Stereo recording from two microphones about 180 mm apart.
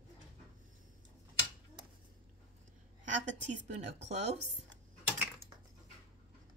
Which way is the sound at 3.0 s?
45° right (ahead or behind).